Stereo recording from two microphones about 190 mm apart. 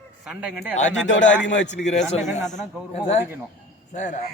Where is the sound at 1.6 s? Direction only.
40° left (ahead or behind).